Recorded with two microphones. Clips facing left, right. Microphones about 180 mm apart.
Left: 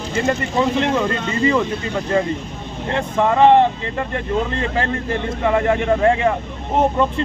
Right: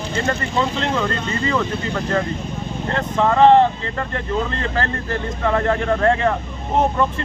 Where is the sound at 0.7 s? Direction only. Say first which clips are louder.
Left 3 dB; 15° left (ahead or behind).